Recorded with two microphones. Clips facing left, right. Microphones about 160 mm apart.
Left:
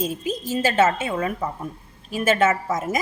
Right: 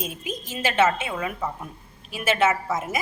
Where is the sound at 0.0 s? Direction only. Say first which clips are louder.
Left 6 dB; 35° left (ahead or behind).